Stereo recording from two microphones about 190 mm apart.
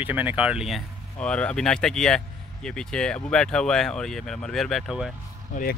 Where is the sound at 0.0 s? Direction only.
10° right (ahead or behind).